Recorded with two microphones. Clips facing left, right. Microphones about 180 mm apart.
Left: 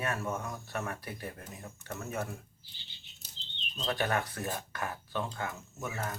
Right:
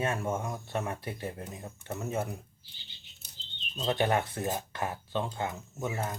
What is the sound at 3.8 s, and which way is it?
Speech, 25° right (ahead or behind).